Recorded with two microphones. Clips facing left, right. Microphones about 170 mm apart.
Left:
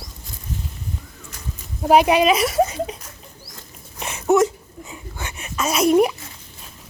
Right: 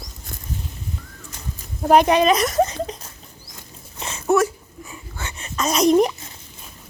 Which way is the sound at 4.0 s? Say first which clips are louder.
Left 2 dB; 15° left (ahead or behind).